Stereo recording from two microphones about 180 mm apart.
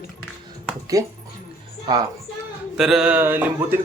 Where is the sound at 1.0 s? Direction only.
20° right (ahead or behind).